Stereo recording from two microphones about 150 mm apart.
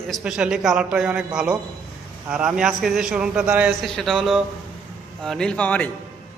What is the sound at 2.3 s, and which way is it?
A man's voice, 5° right (ahead or behind).